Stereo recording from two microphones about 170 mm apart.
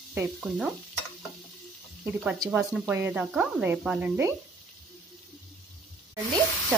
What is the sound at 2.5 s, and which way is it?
Speech, 10° right (ahead or behind).